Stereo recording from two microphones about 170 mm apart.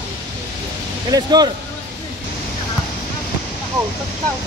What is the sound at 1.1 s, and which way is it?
Speech, 25° right (ahead or behind).